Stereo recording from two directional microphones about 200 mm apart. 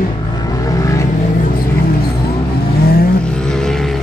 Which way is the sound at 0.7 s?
15° left (ahead or behind).